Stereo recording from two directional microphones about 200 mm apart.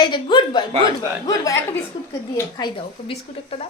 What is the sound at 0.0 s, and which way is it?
A child's voice, 25° left (ahead or behind).